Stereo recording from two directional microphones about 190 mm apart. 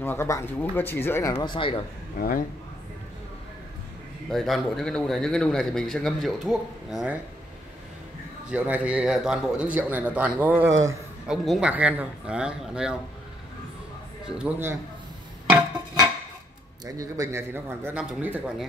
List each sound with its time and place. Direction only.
0.0 s speech: 10° left (ahead or behind)
2.1 s a man's voice: 50° left (ahead or behind)
4.3 s a man's voice: centre (ahead or behind)
8.5 s a man's voice: 5° right (ahead or behind)
11.2 s a man's voice: 5° right (ahead or behind)
14.2 s a man's voice: 10° right (ahead or behind)
16.8 s a man's voice: 15° right (ahead or behind)